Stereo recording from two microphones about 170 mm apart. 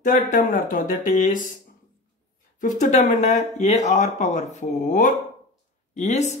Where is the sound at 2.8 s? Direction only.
45° left (ahead or behind).